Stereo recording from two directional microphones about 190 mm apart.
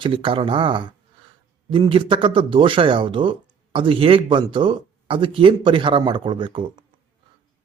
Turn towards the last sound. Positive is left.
turn(degrees=-25)  # may be behind; listen again after turning